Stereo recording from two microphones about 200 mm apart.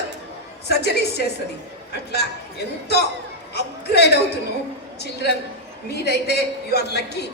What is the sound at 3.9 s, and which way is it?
A woman's voice, 55° left (ahead or behind).